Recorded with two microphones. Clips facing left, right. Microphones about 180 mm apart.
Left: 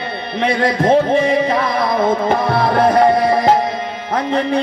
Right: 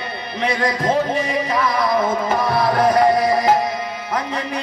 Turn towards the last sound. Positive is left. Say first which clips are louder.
# left 3 dB
turn(degrees=25)  # may be behind; listen again after turning